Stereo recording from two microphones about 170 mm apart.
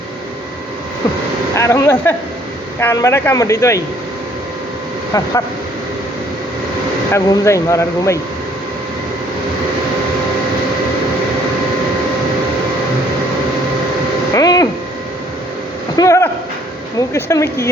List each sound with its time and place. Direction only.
1.5 s a man's voice: 20° left (ahead or behind)
5.1 s speech: 20° left (ahead or behind)
7.1 s a man's voice: 15° left (ahead or behind)
14.3 s a sound: 20° left (ahead or behind)
16.0 s a sound: 15° left (ahead or behind)
17.0 s a man's voice: 15° left (ahead or behind)